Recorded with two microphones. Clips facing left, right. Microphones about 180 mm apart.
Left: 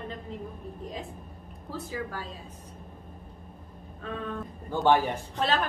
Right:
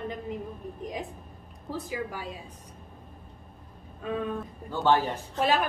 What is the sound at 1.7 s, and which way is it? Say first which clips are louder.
Speech: right 2 dB; 15° right (ahead or behind).